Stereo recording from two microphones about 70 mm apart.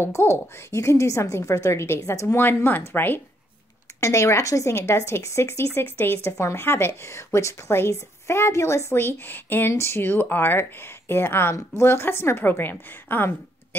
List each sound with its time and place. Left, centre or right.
0.0 s speech: left
2.3 s a woman's voice: left
4.0 s a woman's voice: left